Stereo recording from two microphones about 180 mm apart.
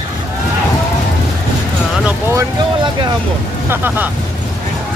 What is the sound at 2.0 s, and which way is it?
Vehicle, 15° right (ahead or behind).